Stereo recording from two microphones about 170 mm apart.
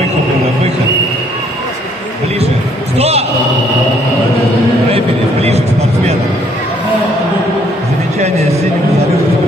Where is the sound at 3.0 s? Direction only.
35° right (ahead or behind).